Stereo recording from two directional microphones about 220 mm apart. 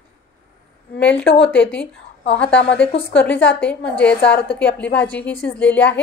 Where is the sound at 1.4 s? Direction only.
5° left (ahead or behind).